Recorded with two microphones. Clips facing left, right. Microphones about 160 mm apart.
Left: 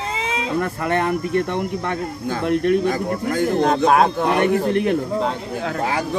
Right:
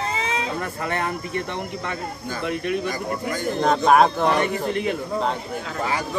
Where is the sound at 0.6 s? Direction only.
55° left (ahead or behind).